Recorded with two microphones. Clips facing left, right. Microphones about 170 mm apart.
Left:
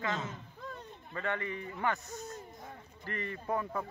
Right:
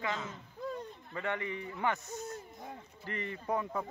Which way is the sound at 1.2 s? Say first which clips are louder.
Even; 15° right (ahead or behind).